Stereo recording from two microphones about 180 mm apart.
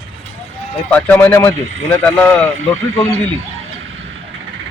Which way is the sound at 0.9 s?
10° left (ahead or behind).